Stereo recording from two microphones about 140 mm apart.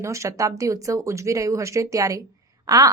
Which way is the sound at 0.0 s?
20° right (ahead or behind).